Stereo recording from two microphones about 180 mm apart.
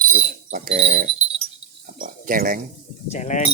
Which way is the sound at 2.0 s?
50° right (ahead or behind).